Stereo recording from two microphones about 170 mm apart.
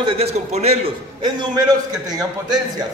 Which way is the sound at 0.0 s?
40° right (ahead or behind).